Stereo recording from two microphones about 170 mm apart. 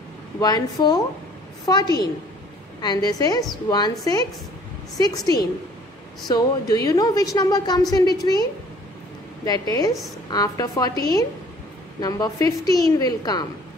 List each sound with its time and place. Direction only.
0.4 s a woman's voice: 25° left (ahead or behind)